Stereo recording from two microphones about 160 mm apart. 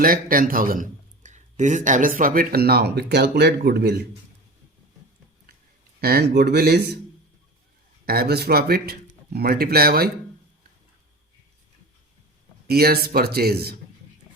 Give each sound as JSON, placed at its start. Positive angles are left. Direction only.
{"t": 0.0, "sound": "a man's voice", "side_deg": -60}
{"t": 6.0, "sound": "speech", "side_deg": -75}
{"t": 8.0, "sound": "speech", "side_deg": -75}
{"t": 12.6, "sound": "speech", "side_deg": -75}